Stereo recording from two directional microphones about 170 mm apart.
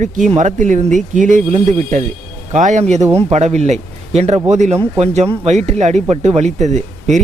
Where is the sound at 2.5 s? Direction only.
45° right (ahead or behind).